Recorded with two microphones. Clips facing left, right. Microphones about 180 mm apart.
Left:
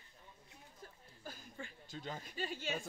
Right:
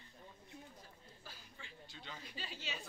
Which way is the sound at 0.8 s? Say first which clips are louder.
Left 2 dB; 50° left (ahead or behind).